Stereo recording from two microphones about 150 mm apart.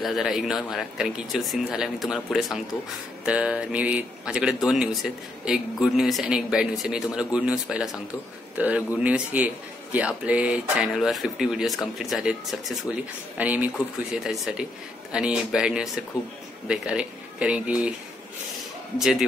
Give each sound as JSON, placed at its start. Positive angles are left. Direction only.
{"t": 0.0, "sound": "speech", "side_deg": 0}
{"t": 18.9, "sound": "speech", "side_deg": 0}